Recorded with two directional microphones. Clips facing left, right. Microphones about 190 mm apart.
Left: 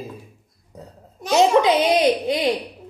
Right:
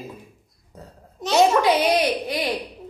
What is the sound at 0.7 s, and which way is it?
A child's voice, 15° left (ahead or behind).